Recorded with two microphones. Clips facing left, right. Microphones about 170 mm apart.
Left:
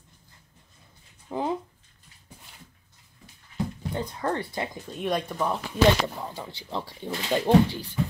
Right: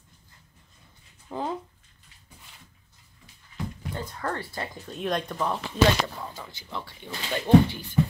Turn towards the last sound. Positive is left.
turn(degrees=30)  # may be behind; listen again after turning